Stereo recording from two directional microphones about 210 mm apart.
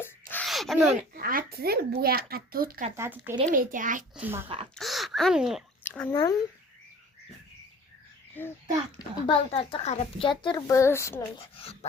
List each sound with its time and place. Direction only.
0.0 s a sound: 10° left (ahead or behind)
1.1 s a child's voice: 45° right (ahead or behind)
2.9 s speech: 10° right (ahead or behind)
3.5 s a child's voice: 40° right (ahead or behind)
4.1 s speech: 10° right (ahead or behind)
5.8 s speech: 10° left (ahead or behind)
8.4 s a child's voice: 10° left (ahead or behind)
9.0 s a woman's voice: 25° left (ahead or behind)
11.3 s a woman's voice: 25° left (ahead or behind)